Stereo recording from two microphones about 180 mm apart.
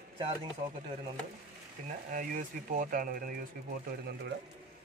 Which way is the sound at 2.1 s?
45° right (ahead or behind).